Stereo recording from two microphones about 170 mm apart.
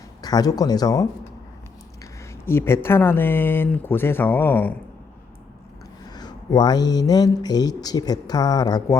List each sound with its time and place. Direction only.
0.2 s speech: 25° left (ahead or behind)
6.1 s speech: 25° left (ahead or behind)